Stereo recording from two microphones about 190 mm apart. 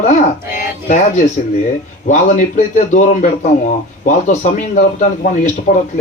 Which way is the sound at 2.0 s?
40° left (ahead or behind).